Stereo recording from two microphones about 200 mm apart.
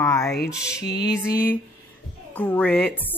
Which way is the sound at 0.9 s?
55° left (ahead or behind).